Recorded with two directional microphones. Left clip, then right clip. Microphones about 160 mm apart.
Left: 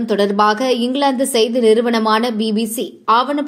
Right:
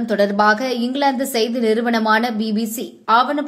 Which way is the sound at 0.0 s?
10° left (ahead or behind).